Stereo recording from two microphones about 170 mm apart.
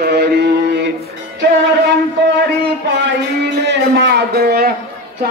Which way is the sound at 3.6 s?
80° right.